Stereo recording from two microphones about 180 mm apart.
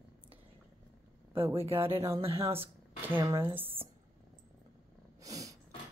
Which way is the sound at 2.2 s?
30° right (ahead or behind).